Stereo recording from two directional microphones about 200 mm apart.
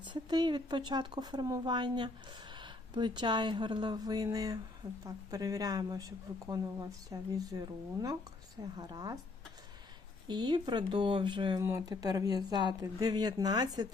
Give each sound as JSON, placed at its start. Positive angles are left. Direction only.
{"t": 0.0, "sound": "a woman's voice", "side_deg": -20}
{"t": 10.2, "sound": "speech", "side_deg": -20}